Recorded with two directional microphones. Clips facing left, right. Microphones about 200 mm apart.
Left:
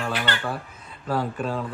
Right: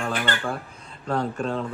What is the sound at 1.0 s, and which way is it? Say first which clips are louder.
Speech: right 1 dB; 5° left (ahead or behind).